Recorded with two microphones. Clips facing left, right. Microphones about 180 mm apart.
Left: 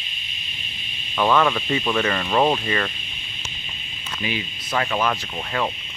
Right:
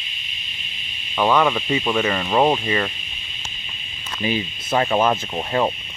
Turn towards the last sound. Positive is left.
turn(degrees=-25)  # may be behind; listen again after turning